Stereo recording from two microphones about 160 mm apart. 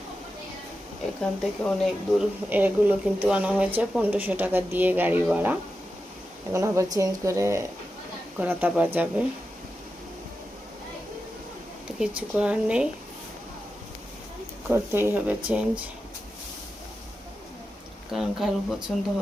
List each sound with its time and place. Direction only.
1.2 s speech: centre (ahead or behind)
2.5 s speech: 10° right (ahead or behind)
11.9 s speech: 5° right (ahead or behind)
14.7 s speech: 15° right (ahead or behind)
18.1 s speech: centre (ahead or behind)